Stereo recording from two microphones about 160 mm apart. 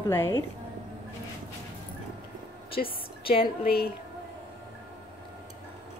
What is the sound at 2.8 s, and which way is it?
A woman's voice, 60° left (ahead or behind).